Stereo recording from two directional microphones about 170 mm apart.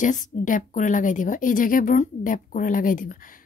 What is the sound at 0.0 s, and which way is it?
A woman's voice, 50° left (ahead or behind).